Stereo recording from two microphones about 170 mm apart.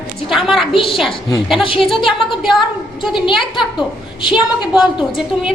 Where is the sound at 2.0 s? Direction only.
Centre (ahead or behind).